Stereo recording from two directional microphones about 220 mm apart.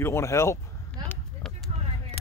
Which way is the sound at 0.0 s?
15° left (ahead or behind).